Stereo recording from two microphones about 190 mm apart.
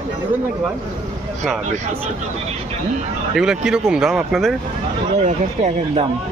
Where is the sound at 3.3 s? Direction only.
Centre (ahead or behind).